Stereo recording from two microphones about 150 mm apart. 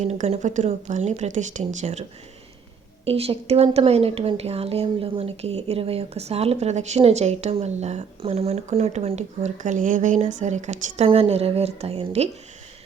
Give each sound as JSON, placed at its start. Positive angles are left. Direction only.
{"t": 0.0, "sound": "speech", "side_deg": -50}